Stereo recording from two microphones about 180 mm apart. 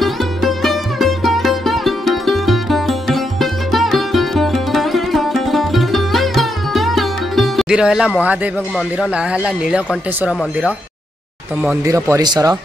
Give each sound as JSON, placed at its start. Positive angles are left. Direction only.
{"t": 0.0, "sound": "sitar", "side_deg": 0}
{"t": 8.2, "sound": "speech", "side_deg": -10}
{"t": 11.8, "sound": "speech", "side_deg": -15}